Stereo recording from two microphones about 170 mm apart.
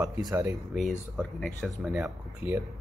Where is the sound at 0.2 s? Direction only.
20° right (ahead or behind).